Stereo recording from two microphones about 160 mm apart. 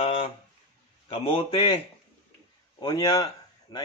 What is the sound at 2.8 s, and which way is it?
Speech, 25° left (ahead or behind).